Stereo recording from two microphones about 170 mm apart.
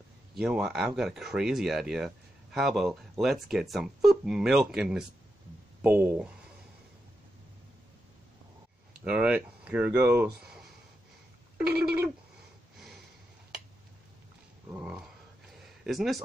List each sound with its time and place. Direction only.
0.3 s speech: 5° right (ahead or behind)
9.0 s speech: 5° right (ahead or behind)
11.7 s turkey: 70° right (ahead or behind)
14.7 s grunt: 5° right (ahead or behind)
15.8 s speech: centre (ahead or behind)